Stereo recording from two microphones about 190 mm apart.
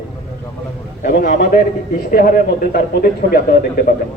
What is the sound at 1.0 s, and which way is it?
Speech, 50° left (ahead or behind).